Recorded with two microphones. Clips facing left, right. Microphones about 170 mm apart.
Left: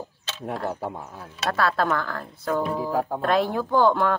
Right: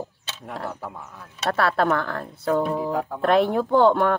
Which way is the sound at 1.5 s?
25° right (ahead or behind).